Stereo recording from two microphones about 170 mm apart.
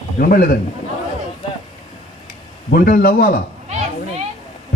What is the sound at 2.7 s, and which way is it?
Speech, 60° left (ahead or behind).